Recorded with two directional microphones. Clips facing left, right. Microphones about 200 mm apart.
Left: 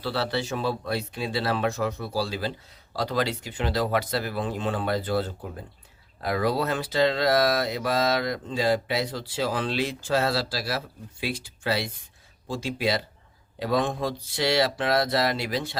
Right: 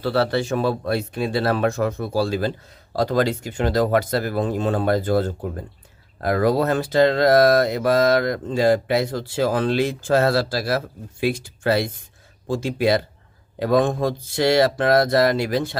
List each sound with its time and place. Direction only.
0.0 s speech: 50° right (ahead or behind)